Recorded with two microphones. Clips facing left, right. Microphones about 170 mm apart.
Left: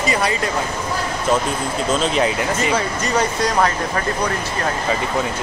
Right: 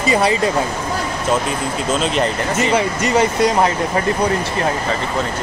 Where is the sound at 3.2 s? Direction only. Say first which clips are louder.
Right 3 dB; 20° right (ahead or behind).